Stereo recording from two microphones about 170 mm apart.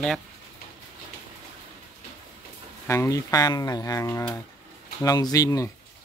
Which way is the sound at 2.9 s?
20° left (ahead or behind).